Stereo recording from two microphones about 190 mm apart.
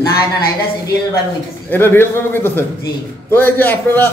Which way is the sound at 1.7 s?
10° left (ahead or behind).